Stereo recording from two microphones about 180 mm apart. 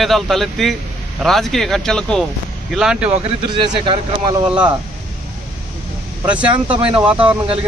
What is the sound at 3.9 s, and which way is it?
Speech, 25° right (ahead or behind).